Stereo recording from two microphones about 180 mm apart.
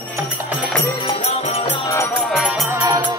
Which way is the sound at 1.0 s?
30° left (ahead or behind).